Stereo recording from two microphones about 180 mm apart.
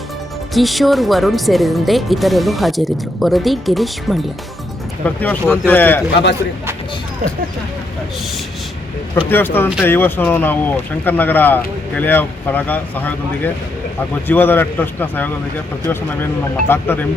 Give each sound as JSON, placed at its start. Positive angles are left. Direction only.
{"t": 0.5, "sound": "speech", "side_deg": 0}
{"t": 9.3, "sound": "speech", "side_deg": 10}
{"t": 16.4, "sound": "speech", "side_deg": 10}